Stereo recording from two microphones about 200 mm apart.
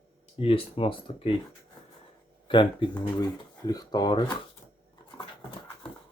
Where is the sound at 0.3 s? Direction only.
25° left (ahead or behind).